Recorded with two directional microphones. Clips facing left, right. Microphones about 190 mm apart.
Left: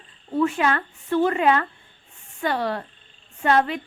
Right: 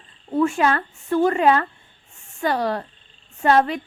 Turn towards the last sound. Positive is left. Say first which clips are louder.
# right 3 dB
turn(degrees=-40)  # may be behind; listen again after turning